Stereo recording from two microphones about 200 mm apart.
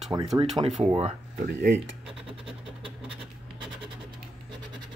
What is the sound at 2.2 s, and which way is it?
Speech, 25° right (ahead or behind).